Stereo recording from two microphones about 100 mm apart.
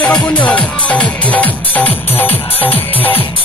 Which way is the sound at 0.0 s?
10° left (ahead or behind).